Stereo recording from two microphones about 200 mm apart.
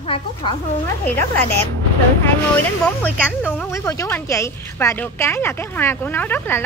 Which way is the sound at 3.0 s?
10° left (ahead or behind).